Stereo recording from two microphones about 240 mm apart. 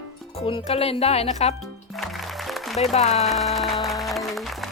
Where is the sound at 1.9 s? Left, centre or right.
Centre.